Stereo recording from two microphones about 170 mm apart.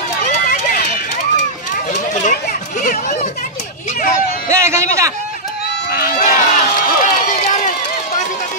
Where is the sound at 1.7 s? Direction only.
50° left (ahead or behind).